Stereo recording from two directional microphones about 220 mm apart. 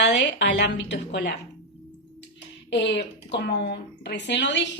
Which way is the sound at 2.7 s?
50° left (ahead or behind).